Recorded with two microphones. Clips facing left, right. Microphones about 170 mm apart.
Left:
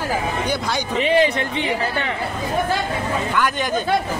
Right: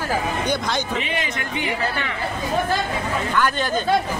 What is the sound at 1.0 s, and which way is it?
Speech, 30° left (ahead or behind).